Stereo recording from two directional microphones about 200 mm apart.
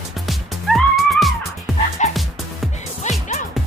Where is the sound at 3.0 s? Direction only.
35° left (ahead or behind).